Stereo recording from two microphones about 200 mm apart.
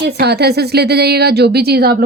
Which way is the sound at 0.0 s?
55° right (ahead or behind).